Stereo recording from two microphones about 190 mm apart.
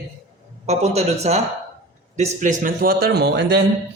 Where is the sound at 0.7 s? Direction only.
35° right (ahead or behind).